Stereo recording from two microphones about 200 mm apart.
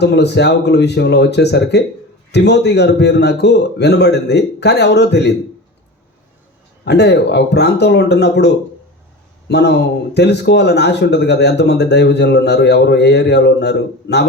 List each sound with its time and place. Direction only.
0.0 s speech: 60° left (ahead or behind)
6.8 s speech: 60° left (ahead or behind)